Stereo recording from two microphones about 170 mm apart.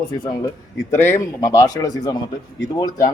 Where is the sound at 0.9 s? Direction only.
15° left (ahead or behind).